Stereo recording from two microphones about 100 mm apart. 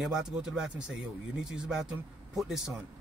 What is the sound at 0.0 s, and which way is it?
Speech, 5° right (ahead or behind).